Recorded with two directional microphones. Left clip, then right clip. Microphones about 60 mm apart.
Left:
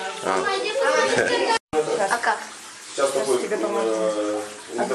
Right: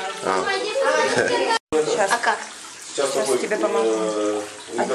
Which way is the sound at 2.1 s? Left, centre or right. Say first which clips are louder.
Right 2 dB; right.